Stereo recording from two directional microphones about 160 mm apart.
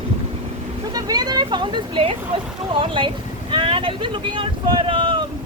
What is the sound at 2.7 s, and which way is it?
Speech, 30° right (ahead or behind).